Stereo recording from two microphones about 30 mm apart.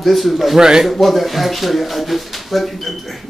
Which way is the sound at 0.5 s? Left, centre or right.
Centre.